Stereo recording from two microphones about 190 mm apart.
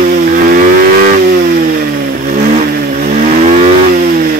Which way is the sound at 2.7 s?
45° right (ahead or behind).